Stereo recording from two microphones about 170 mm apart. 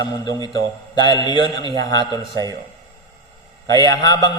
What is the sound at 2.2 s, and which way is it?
Speech, 25° right (ahead or behind).